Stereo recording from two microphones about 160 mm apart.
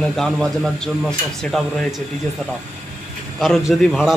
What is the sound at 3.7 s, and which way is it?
Speech, centre (ahead or behind).